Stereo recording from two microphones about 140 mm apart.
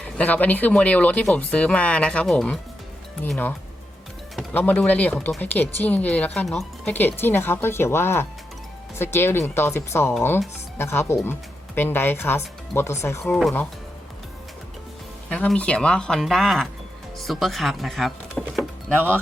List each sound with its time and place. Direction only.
0.0 s speech: 10° left (ahead or behind)
4.5 s speech: 10° left (ahead or behind)
15.3 s speech: 5° left (ahead or behind)
18.9 s speech: 15° right (ahead or behind)